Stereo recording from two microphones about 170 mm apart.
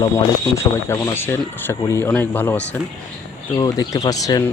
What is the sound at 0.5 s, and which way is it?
Speech, 15° left (ahead or behind).